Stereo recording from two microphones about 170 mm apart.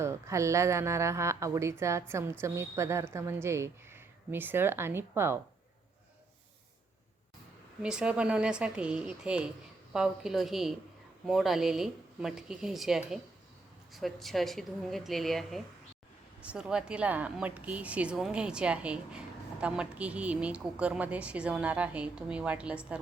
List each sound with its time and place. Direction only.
0.0 s a woman's voice: 15° right (ahead or behind)
7.8 s a woman's voice: 5° right (ahead or behind)